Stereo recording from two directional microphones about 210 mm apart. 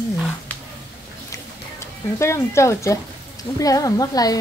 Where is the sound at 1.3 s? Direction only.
15° left (ahead or behind).